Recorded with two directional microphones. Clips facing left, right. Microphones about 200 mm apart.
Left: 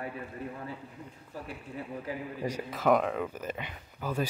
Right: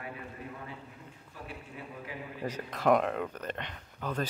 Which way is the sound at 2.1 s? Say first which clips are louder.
Left 6 dB; 40° left (ahead or behind).